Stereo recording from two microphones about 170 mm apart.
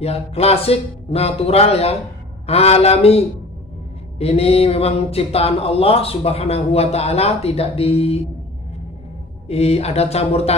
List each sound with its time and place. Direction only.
0.0 s speech: 35° left (ahead or behind)
9.5 s speech: 35° left (ahead or behind)